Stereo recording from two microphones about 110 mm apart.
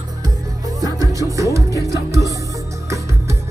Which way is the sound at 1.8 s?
30° right (ahead or behind).